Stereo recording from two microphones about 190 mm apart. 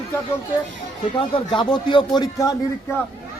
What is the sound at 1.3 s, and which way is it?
Speech, 25° left (ahead or behind).